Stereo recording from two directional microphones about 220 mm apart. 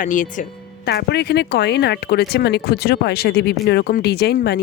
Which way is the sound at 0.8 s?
50° left (ahead or behind).